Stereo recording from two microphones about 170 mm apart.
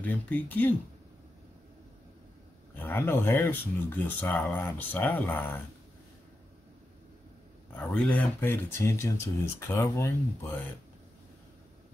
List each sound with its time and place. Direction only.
0.0 s speech: 10° left (ahead or behind)
2.7 s speech: 10° left (ahead or behind)
7.7 s speech: 5° left (ahead or behind)